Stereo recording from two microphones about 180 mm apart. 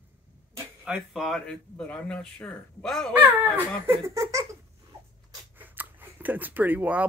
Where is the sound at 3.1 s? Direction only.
10° right (ahead or behind).